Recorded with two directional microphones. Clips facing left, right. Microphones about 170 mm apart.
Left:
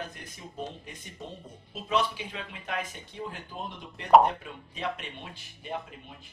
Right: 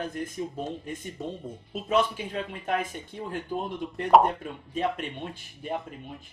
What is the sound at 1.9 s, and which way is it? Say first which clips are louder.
Speech: right 4 dB; 45° right (ahead or behind).